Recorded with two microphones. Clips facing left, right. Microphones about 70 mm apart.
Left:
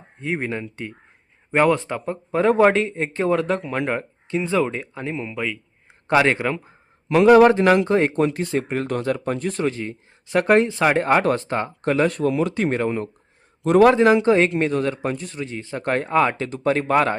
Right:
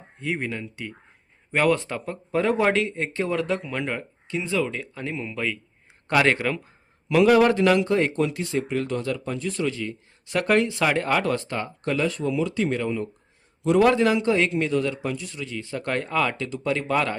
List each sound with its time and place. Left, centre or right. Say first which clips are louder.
0.3 s a man's voice: left 4 dB; left
4.8 s speech: left 3 dB; left
7.1 s a man's voice: left 5 dB; left
8.1 s a man's voice: left 4 dB; left
13.9 s a man's voice: left 5 dB; left